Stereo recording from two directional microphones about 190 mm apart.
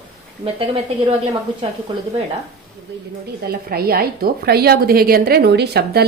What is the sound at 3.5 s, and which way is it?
A woman's voice, 55° right (ahead or behind).